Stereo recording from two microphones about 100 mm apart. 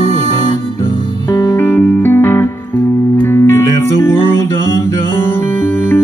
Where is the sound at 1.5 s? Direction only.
25° left (ahead or behind).